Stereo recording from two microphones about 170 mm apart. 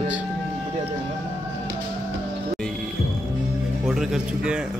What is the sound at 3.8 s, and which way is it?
Speech, centre (ahead or behind).